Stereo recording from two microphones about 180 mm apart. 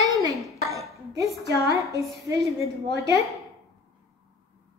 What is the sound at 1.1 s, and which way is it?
A woman's voice, 15° right (ahead or behind).